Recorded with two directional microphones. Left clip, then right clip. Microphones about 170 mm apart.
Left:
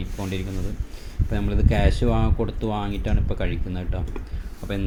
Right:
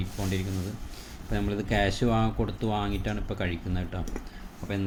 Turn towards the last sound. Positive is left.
turn(degrees=5)  # may be behind; listen again after turning